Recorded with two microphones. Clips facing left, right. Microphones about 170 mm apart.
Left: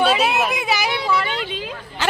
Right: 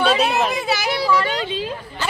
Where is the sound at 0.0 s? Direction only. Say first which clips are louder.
Even; 5° left (ahead or behind).